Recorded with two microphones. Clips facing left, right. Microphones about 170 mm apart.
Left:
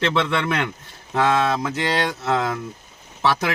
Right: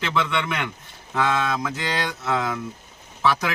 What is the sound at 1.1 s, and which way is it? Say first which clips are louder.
Speech: left 4 dB; 35° left (ahead or behind).